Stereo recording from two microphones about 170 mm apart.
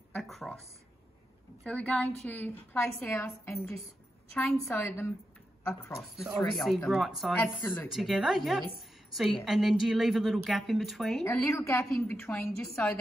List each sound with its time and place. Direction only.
0.1 s a sound: centre (ahead or behind)
1.6 s a woman's voice: 5° left (ahead or behind)
5.9 s a woman's voice: centre (ahead or behind)
7.4 s a woman's voice: 10° left (ahead or behind)
7.9 s a woman's voice: centre (ahead or behind)
11.2 s a woman's voice: 15° left (ahead or behind)